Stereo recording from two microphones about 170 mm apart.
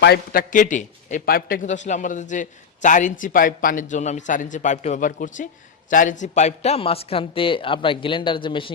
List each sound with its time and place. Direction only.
0.0 s a man's voice: 70° left (ahead or behind)
0.5 s a man's voice: 50° left (ahead or behind); by 8.7 s 30° left (ahead or behind)